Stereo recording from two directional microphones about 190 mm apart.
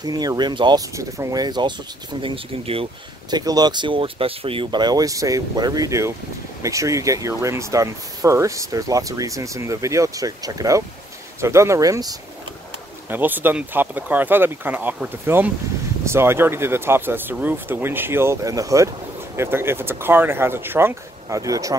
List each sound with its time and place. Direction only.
0.0 s speech: 20° right (ahead or behind)